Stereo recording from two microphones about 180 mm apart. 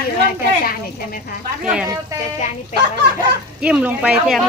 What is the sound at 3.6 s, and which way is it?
Speech, 5° right (ahead or behind).